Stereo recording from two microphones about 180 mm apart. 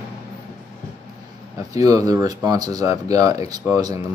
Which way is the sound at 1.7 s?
20° right (ahead or behind).